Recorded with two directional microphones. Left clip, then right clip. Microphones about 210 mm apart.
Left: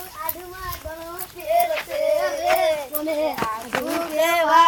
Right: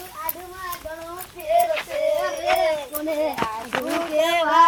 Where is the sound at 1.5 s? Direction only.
5° left (ahead or behind).